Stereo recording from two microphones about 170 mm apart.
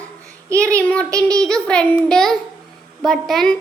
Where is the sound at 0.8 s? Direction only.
5° left (ahead or behind).